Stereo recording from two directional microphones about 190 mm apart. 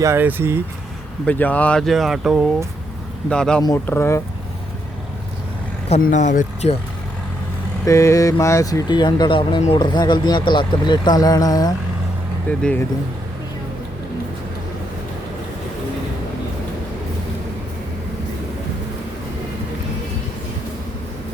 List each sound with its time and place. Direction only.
0.0 s speech: 10° right (ahead or behind)
1.2 s speech: 10° left (ahead or behind)
3.6 s speech: 15° left (ahead or behind)
6.0 s speech: 40° left (ahead or behind)
7.9 s speech: 15° left (ahead or behind)
12.5 s speech: 5° left (ahead or behind)